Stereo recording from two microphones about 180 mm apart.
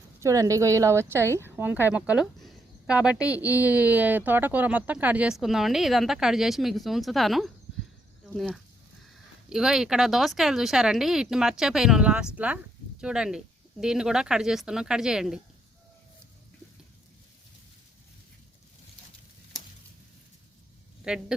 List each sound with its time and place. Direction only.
0.2 s a woman's voice: 15° right (ahead or behind)
21.0 s speech: 5° right (ahead or behind)